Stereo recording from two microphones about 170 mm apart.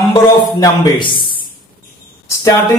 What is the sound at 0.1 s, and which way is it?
Speech, 25° left (ahead or behind).